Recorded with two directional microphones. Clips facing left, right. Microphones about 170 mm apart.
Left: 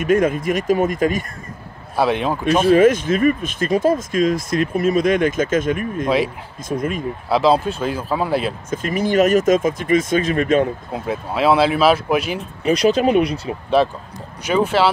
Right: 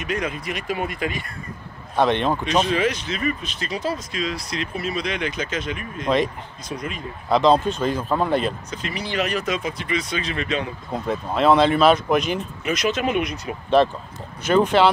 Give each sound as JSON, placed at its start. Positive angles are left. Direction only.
{"t": 0.0, "sound": "speech", "side_deg": 50}
{"t": 2.0, "sound": "speech", "side_deg": 5}
{"t": 2.6, "sound": "speech", "side_deg": 50}
{"t": 6.0, "sound": "speech", "side_deg": 5}
{"t": 6.7, "sound": "speech", "side_deg": 50}
{"t": 7.2, "sound": "speech", "side_deg": 5}
{"t": 8.6, "sound": "speech", "side_deg": 50}
{"t": 10.9, "sound": "speech", "side_deg": 5}
{"t": 12.6, "sound": "speech", "side_deg": 35}
{"t": 13.8, "sound": "speech", "side_deg": 10}